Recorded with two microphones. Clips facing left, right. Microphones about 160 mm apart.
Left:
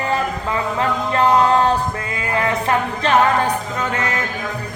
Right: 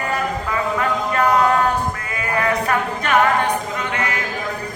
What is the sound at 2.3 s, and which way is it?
Music, 25° left (ahead or behind).